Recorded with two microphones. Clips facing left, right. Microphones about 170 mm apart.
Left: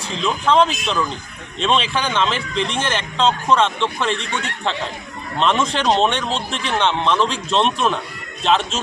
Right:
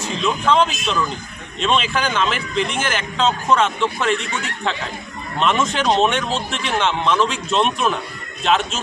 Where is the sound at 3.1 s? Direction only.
5° right (ahead or behind).